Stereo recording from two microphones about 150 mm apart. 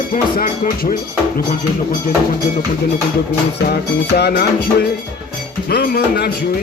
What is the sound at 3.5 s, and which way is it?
Music, 90° left.